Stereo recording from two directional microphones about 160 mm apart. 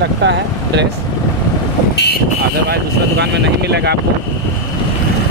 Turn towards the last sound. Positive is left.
turn(degrees=-90)